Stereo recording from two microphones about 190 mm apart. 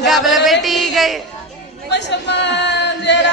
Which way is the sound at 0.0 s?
Centre (ahead or behind).